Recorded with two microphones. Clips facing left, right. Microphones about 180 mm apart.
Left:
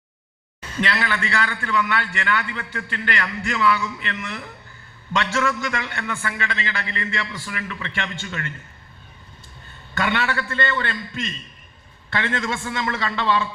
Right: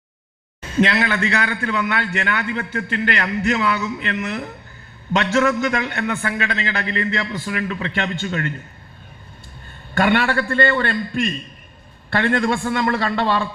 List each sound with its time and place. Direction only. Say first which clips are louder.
0.9 s a man's voice: right 5 dB; 45° right (ahead or behind)
6.9 s a man's voice: right 6 dB; 40° right (ahead or behind)
8.2 s a man's voice: right 7 dB; 50° right (ahead or behind)
9.9 s a man's voice: right 6 dB; 50° right (ahead or behind)